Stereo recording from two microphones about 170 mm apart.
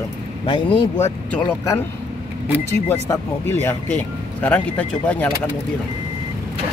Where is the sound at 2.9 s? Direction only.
15° left (ahead or behind).